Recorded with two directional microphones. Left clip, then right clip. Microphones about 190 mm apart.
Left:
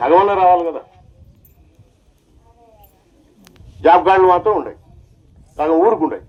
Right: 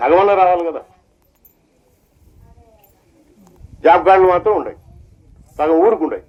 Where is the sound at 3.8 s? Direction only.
50° left (ahead or behind).